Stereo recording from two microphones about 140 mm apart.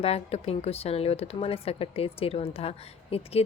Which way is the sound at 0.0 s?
45° left (ahead or behind).